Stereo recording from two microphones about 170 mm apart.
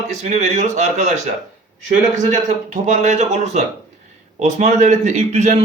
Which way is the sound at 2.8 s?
45° right (ahead or behind).